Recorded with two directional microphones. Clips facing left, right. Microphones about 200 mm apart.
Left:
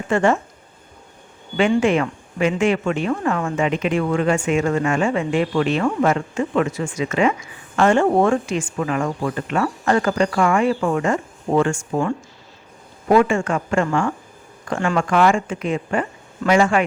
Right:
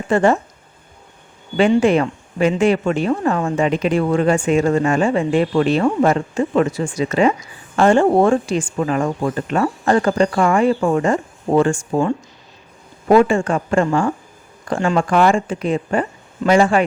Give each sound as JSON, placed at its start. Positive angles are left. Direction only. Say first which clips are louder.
{"t": 0.1, "sound": "speech", "louder": "right 3 dB", "side_deg": -35}
{"t": 1.8, "sound": "speech", "louder": "right 3 dB", "side_deg": -35}